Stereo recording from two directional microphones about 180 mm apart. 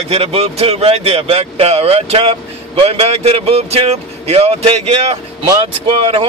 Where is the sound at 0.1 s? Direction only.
35° right (ahead or behind).